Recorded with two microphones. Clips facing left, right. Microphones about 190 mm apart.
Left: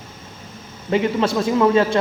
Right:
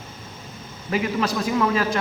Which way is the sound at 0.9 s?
25° left (ahead or behind).